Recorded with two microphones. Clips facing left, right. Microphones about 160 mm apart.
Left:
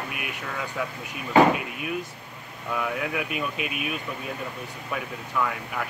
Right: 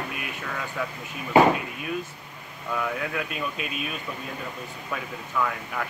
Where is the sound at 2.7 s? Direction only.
5° left (ahead or behind).